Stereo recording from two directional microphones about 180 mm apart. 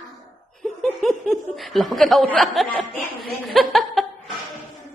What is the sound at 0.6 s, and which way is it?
Speech, 5° left (ahead or behind).